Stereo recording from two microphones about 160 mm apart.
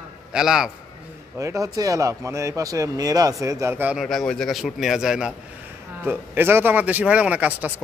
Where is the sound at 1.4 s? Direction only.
20° right (ahead or behind).